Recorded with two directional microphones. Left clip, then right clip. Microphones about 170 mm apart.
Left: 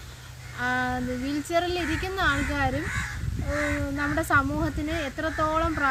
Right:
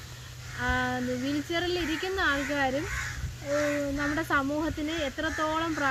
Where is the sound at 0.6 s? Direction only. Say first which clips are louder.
Left 2 dB; 25° left (ahead or behind).